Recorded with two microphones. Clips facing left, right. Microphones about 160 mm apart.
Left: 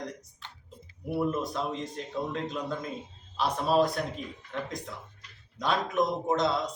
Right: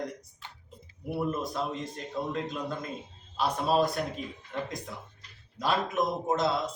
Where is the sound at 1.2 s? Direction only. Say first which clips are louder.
Left 1 dB; centre (ahead or behind).